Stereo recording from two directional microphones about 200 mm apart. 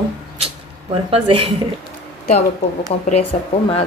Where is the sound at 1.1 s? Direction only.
30° right (ahead or behind).